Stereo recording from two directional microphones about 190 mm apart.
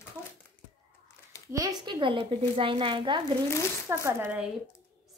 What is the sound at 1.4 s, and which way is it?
A woman's voice, 20° right (ahead or behind).